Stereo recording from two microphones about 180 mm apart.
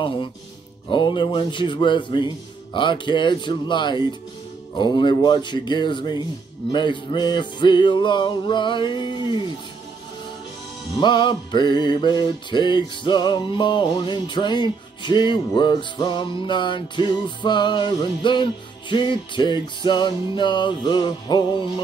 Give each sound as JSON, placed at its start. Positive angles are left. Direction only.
{"t": 0.8, "sound": "music", "side_deg": 25}
{"t": 11.0, "sound": "music", "side_deg": 25}